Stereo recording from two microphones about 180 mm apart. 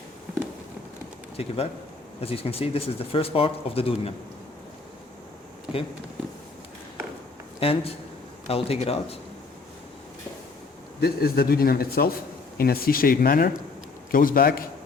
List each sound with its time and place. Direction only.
1.4 s speech: 35° left (ahead or behind)
7.6 s speech: 30° left (ahead or behind)
11.0 s a man's voice: 60° left (ahead or behind)